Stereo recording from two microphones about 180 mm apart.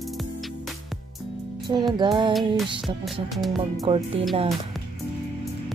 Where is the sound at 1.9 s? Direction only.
25° right (ahead or behind).